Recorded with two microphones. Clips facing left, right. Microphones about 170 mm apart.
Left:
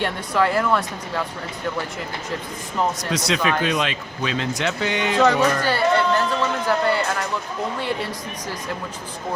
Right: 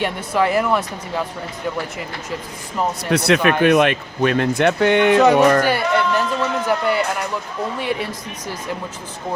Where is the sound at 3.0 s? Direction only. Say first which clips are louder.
Right 6 dB; 60° right (ahead or behind).